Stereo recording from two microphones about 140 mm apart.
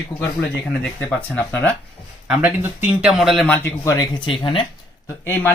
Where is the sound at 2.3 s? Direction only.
10° right (ahead or behind).